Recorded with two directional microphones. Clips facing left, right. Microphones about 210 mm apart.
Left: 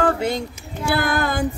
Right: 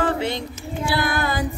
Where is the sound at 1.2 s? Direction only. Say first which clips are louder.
Left 2 dB; 50° left (ahead or behind).